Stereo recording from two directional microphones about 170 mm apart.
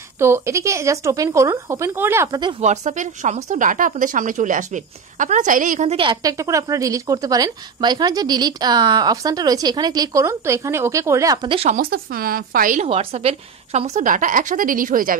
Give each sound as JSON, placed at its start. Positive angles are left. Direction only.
{"t": 0.2, "sound": "speech", "side_deg": -15}
{"t": 2.6, "sound": "a woman's voice", "side_deg": -40}
{"t": 6.2, "sound": "a woman's voice", "side_deg": -20}
{"t": 11.4, "sound": "speech", "side_deg": -30}
{"t": 11.7, "sound": "speech", "side_deg": -60}
{"t": 12.8, "sound": "a woman's voice", "side_deg": -35}